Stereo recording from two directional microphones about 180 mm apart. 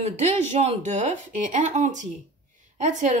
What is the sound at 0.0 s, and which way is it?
A woman's voice, 40° right (ahead or behind).